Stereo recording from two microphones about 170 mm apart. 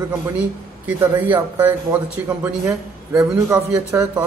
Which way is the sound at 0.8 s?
10° right (ahead or behind).